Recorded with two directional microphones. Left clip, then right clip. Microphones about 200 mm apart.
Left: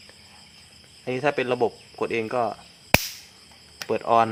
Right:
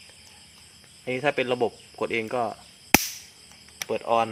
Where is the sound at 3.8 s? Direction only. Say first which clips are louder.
Left 4 dB; 15° left (ahead or behind).